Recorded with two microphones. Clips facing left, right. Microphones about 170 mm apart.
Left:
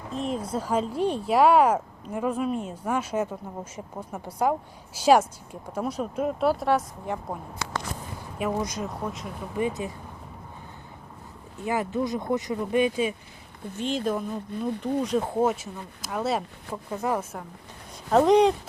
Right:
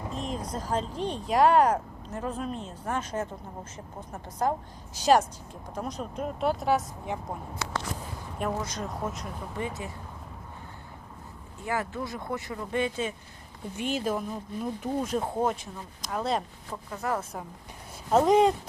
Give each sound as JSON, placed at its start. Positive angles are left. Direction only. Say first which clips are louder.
{"t": 0.1, "sound": "speech", "louder": "left 7 dB", "side_deg": 0}
{"t": 8.4, "sound": "speech", "louder": "left 3 dB", "side_deg": 5}
{"t": 9.6, "sound": "speech", "louder": "left 7 dB", "side_deg": 20}
{"t": 11.6, "sound": "speech", "louder": "left 5 dB", "side_deg": 20}
{"t": 13.7, "sound": "speech", "louder": "left 2 dB", "side_deg": -10}
{"t": 16.9, "sound": "speech", "louder": "left 3 dB", "side_deg": 20}
{"t": 18.1, "sound": "speech", "louder": "left 2 dB", "side_deg": 0}